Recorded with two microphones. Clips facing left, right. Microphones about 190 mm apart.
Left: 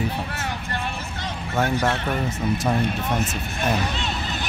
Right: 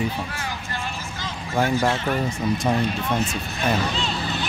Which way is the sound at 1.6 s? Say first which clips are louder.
Right 1 dB; centre (ahead or behind).